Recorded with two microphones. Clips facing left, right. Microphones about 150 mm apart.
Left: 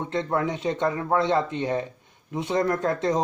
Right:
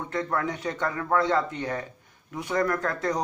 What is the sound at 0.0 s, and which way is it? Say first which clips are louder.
Speech: left 3 dB; 25° left (ahead or behind).